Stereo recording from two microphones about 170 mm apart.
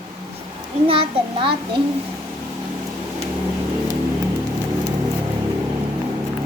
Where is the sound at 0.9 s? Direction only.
30° right (ahead or behind).